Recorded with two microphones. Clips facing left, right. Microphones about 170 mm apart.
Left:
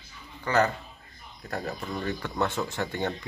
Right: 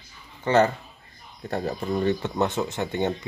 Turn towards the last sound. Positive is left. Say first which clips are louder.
# right 4 dB
turn(degrees=-20)  # may be behind; listen again after turning